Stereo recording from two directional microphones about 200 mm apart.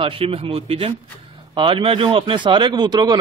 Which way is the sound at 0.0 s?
30° right (ahead or behind).